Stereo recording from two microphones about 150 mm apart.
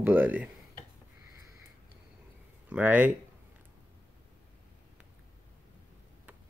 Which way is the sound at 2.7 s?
10° right (ahead or behind).